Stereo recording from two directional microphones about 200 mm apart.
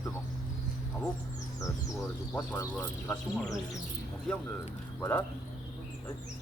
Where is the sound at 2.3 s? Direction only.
15° left (ahead or behind).